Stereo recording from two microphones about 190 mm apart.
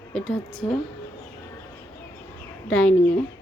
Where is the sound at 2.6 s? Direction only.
5° left (ahead or behind).